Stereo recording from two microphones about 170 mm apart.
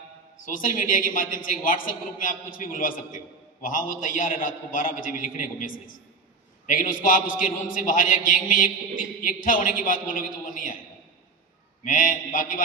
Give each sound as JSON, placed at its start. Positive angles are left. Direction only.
{"t": 0.4, "sound": "a woman's voice", "side_deg": 55}
{"t": 11.8, "sound": "a woman's voice", "side_deg": 50}